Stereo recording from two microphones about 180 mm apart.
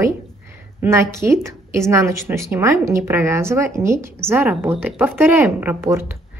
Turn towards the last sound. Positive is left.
turn(degrees=-15)  # may be behind; listen again after turning